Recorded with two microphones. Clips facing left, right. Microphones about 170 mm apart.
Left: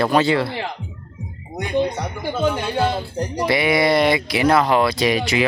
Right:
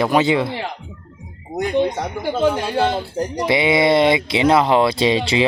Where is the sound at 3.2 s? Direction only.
20° right (ahead or behind).